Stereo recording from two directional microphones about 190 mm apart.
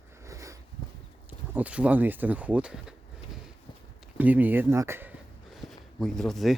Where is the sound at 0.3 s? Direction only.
15° right (ahead or behind).